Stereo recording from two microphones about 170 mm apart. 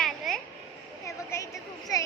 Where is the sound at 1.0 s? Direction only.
15° left (ahead or behind).